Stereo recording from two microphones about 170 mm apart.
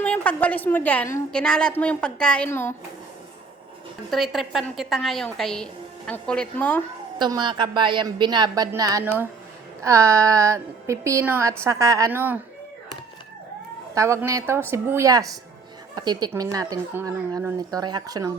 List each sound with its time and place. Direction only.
0.0 s a woman's voice: 10° left (ahead or behind)
4.1 s a woman's voice: centre (ahead or behind)
7.2 s a woman's voice: 25° right (ahead or behind)
13.9 s a woman's voice: 15° right (ahead or behind)